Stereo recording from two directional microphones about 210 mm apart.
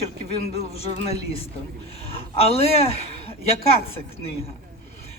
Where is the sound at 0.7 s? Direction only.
30° left (ahead or behind).